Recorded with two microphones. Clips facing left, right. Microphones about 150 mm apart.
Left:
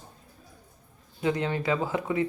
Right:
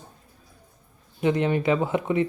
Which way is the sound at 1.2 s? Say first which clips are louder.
Right 5 dB; 20° right (ahead or behind).